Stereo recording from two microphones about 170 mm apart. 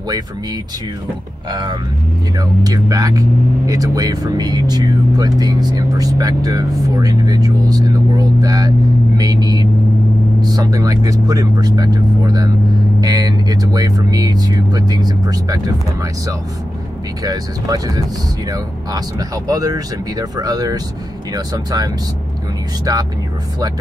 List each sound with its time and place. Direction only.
1.5 s speech: 25° right (ahead or behind)